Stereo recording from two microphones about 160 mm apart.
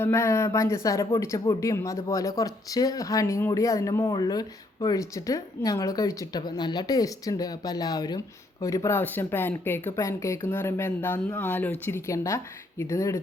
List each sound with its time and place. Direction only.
0.0 s speech: 15° left (ahead or behind)